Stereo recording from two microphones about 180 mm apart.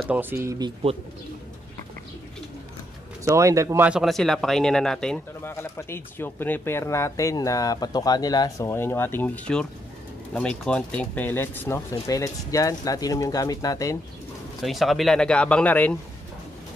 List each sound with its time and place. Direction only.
0.0 s speech: 10° right (ahead or behind)
3.3 s speech: 15° right (ahead or behind); by 13.9 s 20° left (ahead or behind)
14.6 s speech: centre (ahead or behind)